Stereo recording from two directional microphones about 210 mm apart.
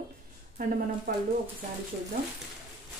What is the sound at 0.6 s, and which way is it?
Speech, 45° right (ahead or behind).